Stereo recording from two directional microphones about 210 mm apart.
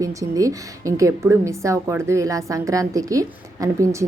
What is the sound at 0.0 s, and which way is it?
A woman's voice, 15° right (ahead or behind).